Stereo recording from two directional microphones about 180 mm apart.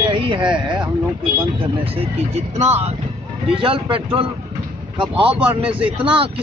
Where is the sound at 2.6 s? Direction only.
35° right (ahead or behind).